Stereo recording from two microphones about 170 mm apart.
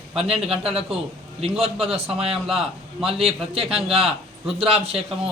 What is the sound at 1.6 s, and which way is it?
Speech, 35° right (ahead or behind).